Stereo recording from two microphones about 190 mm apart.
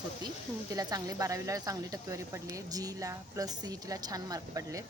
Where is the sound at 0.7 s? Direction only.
20° right (ahead or behind).